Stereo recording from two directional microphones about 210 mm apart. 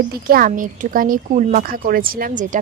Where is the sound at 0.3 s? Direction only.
40° right (ahead or behind).